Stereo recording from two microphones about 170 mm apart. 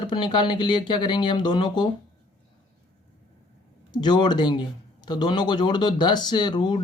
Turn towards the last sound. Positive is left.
turn(degrees=25)  # may be behind; listen again after turning